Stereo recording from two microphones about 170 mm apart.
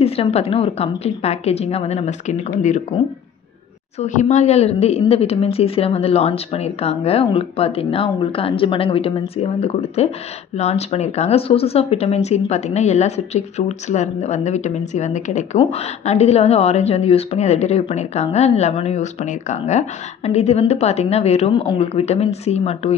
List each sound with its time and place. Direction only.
0.0 s speech: 35° left (ahead or behind)
4.0 s speech: 45° left (ahead or behind)